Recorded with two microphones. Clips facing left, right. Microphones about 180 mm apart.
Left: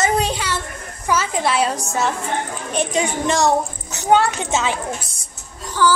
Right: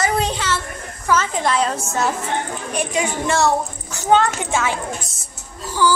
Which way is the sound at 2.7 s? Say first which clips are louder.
Left 2 dB; 20° left (ahead or behind).